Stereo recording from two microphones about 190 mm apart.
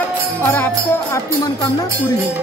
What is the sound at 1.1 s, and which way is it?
Speech, 20° left (ahead or behind).